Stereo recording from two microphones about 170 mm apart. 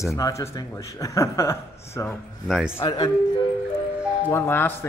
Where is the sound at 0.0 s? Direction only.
15° left (ahead or behind).